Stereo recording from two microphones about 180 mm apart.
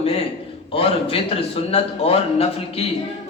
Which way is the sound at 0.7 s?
30° left (ahead or behind).